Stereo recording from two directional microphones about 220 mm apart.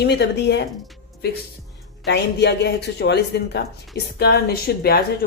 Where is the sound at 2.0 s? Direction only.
50° left (ahead or behind).